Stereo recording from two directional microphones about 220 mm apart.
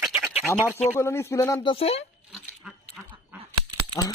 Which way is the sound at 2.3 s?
Centre (ahead or behind).